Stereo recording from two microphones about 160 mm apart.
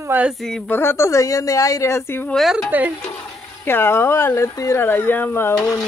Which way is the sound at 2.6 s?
10° right (ahead or behind).